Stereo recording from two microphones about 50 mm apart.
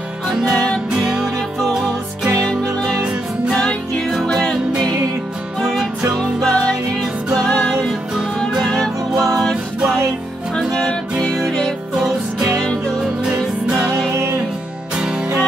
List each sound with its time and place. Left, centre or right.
0.4 s music: centre
3.5 s music: centre
4.1 s music: centre
5.6 s music: centre
6.1 s music: centre
10.7 s music: centre
15.0 s music: centre